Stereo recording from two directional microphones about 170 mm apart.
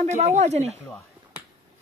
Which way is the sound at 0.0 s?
40° right (ahead or behind).